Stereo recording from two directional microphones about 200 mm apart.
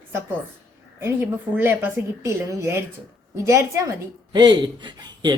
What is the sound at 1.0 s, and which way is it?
A woman's voice, 10° right (ahead or behind).